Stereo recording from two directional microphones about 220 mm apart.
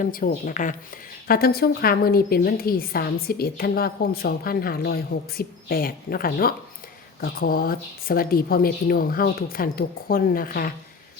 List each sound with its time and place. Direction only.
0.0 s a woman's voice: 40° left (ahead or behind)